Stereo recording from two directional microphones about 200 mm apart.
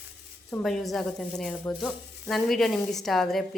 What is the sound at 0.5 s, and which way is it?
Speech, centre (ahead or behind).